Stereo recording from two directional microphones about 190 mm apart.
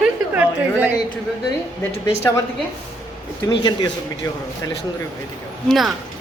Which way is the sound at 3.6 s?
20° left (ahead or behind).